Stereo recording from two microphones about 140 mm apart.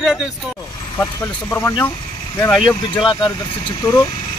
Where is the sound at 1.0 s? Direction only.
15° left (ahead or behind).